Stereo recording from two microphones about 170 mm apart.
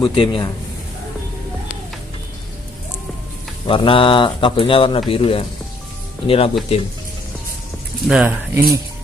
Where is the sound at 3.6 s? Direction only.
30° left (ahead or behind).